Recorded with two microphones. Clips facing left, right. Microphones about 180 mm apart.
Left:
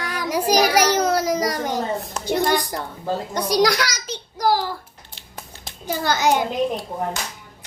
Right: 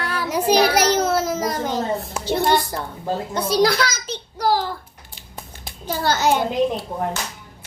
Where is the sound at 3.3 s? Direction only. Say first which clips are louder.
Right 1 dB; 15° left (ahead or behind).